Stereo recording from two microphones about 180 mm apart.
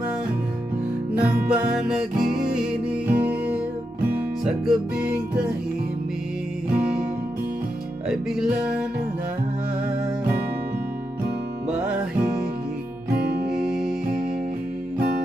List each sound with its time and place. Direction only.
1.1 s music: 5° right (ahead or behind)
6.7 s music: 5° right (ahead or behind)
8.1 s music: 5° right (ahead or behind)
13.2 s music: 55° right (ahead or behind)
15.0 s music: 60° right (ahead or behind)